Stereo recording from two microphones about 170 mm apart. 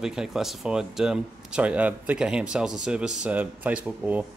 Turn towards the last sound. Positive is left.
turn(degrees=-10)  # may be behind; listen again after turning